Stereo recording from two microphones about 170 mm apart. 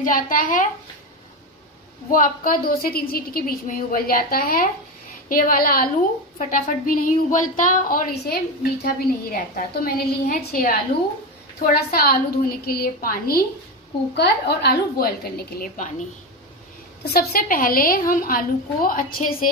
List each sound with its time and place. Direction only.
0.0 s speech: 55° left (ahead or behind)
2.0 s a woman's voice: 55° left (ahead or behind)
14.1 s a woman's voice: 75° left (ahead or behind); by 16.1 s 50° left (ahead or behind)
17.0 s a woman's voice: 65° left (ahead or behind)